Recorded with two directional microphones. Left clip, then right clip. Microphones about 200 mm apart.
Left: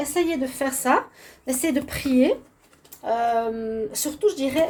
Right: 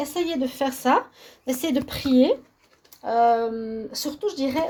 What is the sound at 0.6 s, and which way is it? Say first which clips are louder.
Speech: right 1 dB; 30° right (ahead or behind).